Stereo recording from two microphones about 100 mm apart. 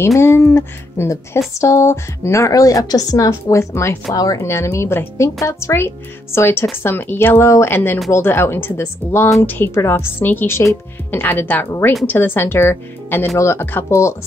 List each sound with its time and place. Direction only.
0.0 s a woman's voice: 25° left (ahead or behind)